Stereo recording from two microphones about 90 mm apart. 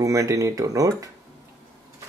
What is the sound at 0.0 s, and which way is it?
Speech, 35° right (ahead or behind).